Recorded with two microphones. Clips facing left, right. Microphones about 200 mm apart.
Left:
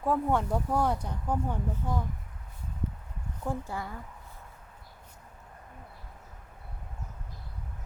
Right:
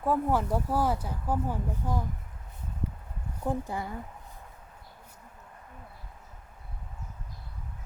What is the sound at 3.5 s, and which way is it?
Speech, 15° right (ahead or behind).